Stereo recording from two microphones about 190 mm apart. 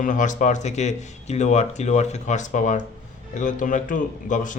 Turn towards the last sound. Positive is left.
turn(degrees=40)  # may be behind; listen again after turning